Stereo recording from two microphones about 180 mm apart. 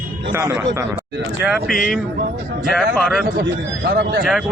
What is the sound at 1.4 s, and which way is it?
Speech, 5° right (ahead or behind).